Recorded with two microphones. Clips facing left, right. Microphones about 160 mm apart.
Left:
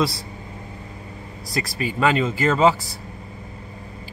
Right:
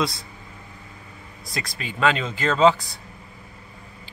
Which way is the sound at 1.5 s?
5° left (ahead or behind).